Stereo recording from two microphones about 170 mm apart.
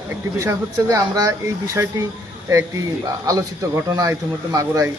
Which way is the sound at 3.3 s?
20° right (ahead or behind).